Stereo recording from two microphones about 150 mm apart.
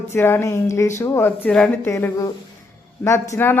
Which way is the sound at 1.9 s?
20° left (ahead or behind).